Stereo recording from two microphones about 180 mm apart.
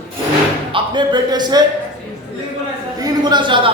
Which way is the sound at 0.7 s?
25° right (ahead or behind).